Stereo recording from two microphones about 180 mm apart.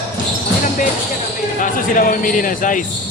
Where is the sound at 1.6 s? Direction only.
45° left (ahead or behind).